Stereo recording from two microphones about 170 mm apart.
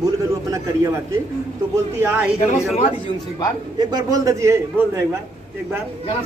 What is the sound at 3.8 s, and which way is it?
A man's voice, 25° right (ahead or behind).